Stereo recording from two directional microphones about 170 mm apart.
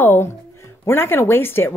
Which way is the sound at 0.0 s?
15° left (ahead or behind).